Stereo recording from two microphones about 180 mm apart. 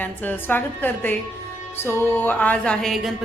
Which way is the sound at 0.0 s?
10° left (ahead or behind).